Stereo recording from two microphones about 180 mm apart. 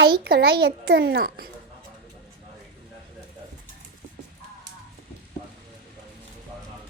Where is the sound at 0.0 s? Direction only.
65° right (ahead or behind).